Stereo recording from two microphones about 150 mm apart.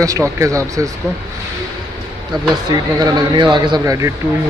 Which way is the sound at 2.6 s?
30° right (ahead or behind).